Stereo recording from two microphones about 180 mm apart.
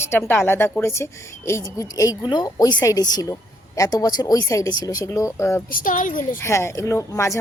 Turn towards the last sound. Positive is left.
turn(degrees=15)  # may be behind; listen again after turning